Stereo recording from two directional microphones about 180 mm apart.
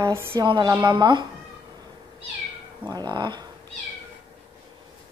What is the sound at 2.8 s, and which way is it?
Speech, 25° right (ahead or behind).